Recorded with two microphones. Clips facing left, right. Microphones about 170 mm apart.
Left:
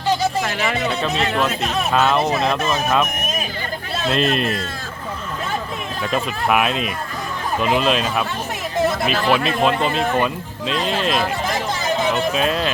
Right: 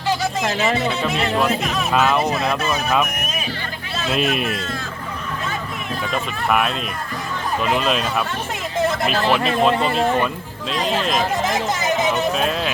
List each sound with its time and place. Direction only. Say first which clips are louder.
1.0 s speech: even; centre (ahead or behind)
4.1 s a man's voice: left 1 dB; 5° right (ahead or behind)
6.1 s speech: left 2 dB; 5° left (ahead or behind)
11.4 s a sound: right 2 dB; 20° right (ahead or behind)
12.1 s speech: left 1 dB; centre (ahead or behind)